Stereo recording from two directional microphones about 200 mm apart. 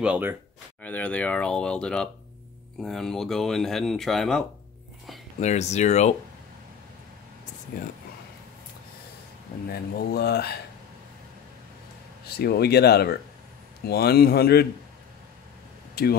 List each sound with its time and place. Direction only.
0.0 s speech: 10° right (ahead or behind)
0.8 s speech: 5° left (ahead or behind)
5.4 s speech: 35° left (ahead or behind)
7.7 s speech: 50° left (ahead or behind)
9.7 s speech: 50° left (ahead or behind)
12.3 s speech: 50° left (ahead or behind)
15.9 s a sound: 50° left (ahead or behind)